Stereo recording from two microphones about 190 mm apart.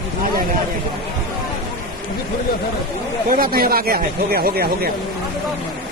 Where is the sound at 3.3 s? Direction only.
50° right (ahead or behind).